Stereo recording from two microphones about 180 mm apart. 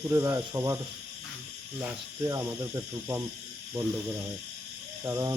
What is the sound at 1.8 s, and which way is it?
Speech, 15° right (ahead or behind).